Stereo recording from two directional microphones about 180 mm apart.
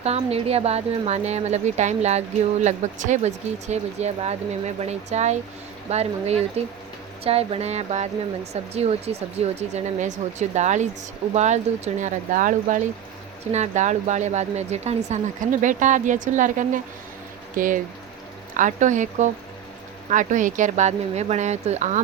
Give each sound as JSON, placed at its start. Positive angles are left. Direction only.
{"t": 0.0, "sound": "speech", "side_deg": -35}